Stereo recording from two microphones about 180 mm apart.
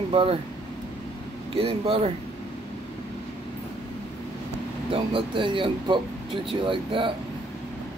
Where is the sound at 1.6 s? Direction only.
30° right (ahead or behind).